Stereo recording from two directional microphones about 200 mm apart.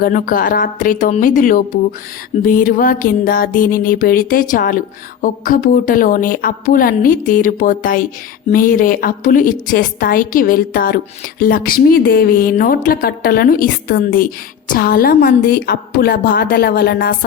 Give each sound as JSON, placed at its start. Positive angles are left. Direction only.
{"t": 0.0, "sound": "a woman's voice", "side_deg": 45}